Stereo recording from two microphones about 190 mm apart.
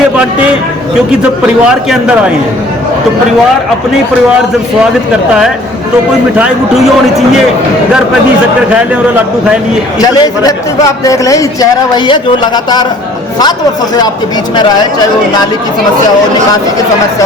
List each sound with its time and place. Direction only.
1.9 s a man's voice: 5° right (ahead or behind)
6.3 s a man's voice: centre (ahead or behind)
10.2 s speech: 20° left (ahead or behind)